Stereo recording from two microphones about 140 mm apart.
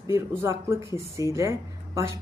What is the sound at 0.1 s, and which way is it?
Speech, 20° right (ahead or behind).